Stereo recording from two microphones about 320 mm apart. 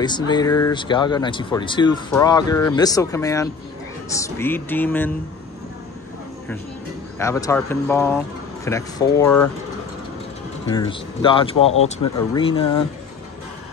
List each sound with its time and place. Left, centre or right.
0.0 s speech: centre
7.2 s speech: centre
10.7 s speech: centre